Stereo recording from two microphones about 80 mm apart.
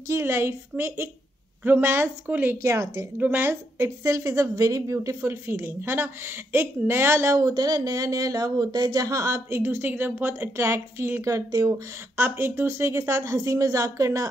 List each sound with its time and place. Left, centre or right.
0.1 s a woman's voice: right
2.6 s speech: right
3.2 s speech: right
7.3 s speech: right